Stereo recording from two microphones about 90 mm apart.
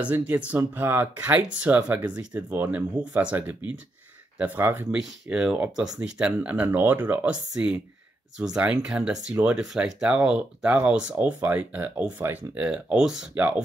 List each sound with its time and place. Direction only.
0.0 s speech: 15° right (ahead or behind)
4.9 s speech: 5° right (ahead or behind)
7.5 s speech: 10° right (ahead or behind)